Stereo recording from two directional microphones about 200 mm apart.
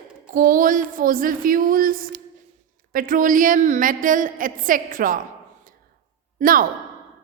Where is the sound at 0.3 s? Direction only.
45° right (ahead or behind).